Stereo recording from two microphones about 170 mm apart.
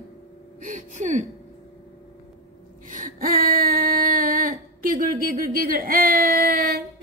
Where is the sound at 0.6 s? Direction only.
45° right (ahead or behind).